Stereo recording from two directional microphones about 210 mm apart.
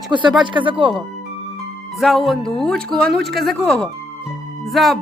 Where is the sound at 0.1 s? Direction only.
20° right (ahead or behind).